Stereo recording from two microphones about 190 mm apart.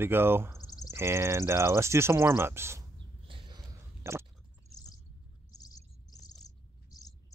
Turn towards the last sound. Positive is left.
turn(degrees=20)  # may be behind; listen again after turning